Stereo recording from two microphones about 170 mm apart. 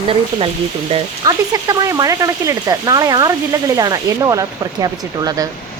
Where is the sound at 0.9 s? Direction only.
20° right (ahead or behind).